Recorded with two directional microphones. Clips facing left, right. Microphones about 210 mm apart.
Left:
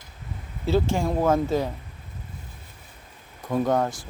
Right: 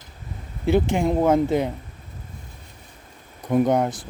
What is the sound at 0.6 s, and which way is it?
Speech, 15° right (ahead or behind).